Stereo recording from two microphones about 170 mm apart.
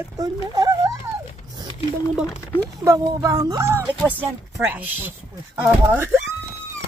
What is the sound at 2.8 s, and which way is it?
Speech, 20° right (ahead or behind).